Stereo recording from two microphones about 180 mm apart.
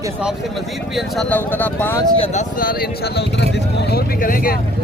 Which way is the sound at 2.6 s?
55° left (ahead or behind).